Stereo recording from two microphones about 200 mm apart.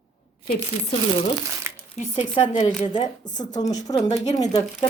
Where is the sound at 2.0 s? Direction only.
35° left (ahead or behind).